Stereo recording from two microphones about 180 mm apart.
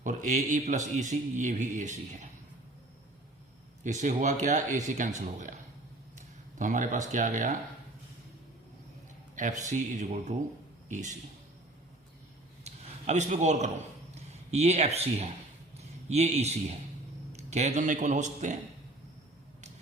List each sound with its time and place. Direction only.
0.0 s a man's voice: 45° right (ahead or behind)
3.8 s a man's voice: 40° right (ahead or behind)
9.3 s a man's voice: 45° right (ahead or behind)
12.6 s a sound: 40° right (ahead or behind)
14.2 s speech: 35° right (ahead or behind)